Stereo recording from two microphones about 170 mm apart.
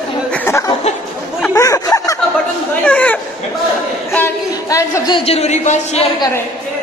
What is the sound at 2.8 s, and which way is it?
A woman's voice, 5° left (ahead or behind).